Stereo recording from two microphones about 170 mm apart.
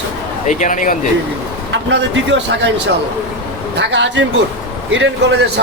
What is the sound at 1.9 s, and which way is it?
A man's voice, 90° right.